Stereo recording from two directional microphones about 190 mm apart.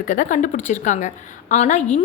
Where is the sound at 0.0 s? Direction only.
45° left (ahead or behind).